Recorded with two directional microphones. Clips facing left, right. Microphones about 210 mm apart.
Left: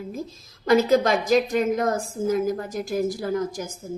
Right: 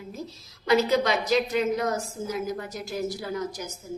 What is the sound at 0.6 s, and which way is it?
A woman's voice, 50° left (ahead or behind).